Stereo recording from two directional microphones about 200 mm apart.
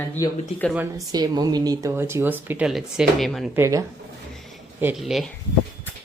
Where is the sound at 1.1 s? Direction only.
20° right (ahead or behind); by 3.5 s centre (ahead or behind).